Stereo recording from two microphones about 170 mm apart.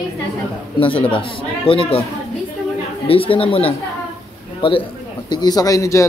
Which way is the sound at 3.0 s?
35° left (ahead or behind).